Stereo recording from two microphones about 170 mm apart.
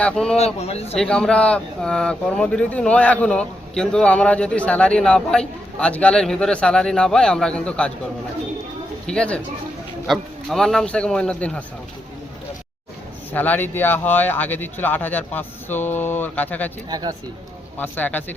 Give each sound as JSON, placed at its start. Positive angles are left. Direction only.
{"t": 0.0, "sound": "speech", "side_deg": 5}
{"t": 0.3, "sound": "speech", "side_deg": 40}
{"t": 0.9, "sound": "speech", "side_deg": 5}
{"t": 9.0, "sound": "speech", "side_deg": 5}
{"t": 13.3, "sound": "speech", "side_deg": 10}
{"t": 16.9, "sound": "speech", "side_deg": -25}
{"t": 17.7, "sound": "speech", "side_deg": 10}